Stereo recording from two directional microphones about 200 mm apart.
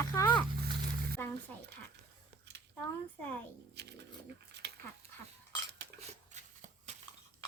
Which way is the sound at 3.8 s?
55° right (ahead or behind).